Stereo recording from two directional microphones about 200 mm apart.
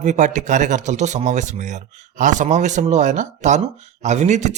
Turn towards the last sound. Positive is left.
turn(degrees=-35)  # may be behind; listen again after turning